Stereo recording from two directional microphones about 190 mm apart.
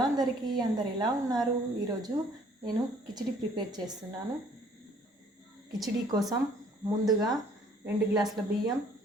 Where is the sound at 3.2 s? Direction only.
20° right (ahead or behind).